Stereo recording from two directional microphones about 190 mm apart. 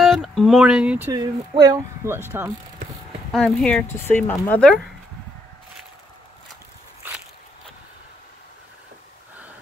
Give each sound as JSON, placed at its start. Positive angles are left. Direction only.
{"t": 0.0, "sound": "speech", "side_deg": 0}
{"t": 1.1, "sound": "speech", "side_deg": -25}
{"t": 3.3, "sound": "speech", "side_deg": 5}